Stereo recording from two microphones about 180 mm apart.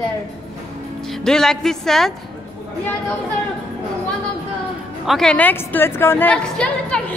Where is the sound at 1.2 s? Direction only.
5° left (ahead or behind).